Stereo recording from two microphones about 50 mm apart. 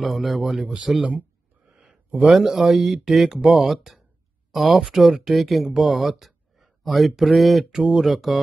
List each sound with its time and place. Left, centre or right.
0.0 s speech: centre
1.7 s a sound: centre
2.3 s speech: centre
3.6 s speech: centre
5.7 s a sound: centre
7.2 s speech: centre
7.7 s speech: centre